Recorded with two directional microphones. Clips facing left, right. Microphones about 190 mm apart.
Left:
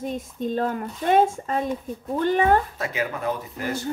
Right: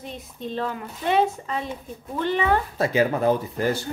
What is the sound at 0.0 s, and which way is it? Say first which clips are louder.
Speech: left 6 dB; 45° left (ahead or behind).